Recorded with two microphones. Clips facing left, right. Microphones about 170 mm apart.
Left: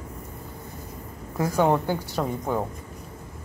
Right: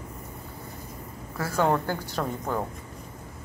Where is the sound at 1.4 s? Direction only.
15° left (ahead or behind).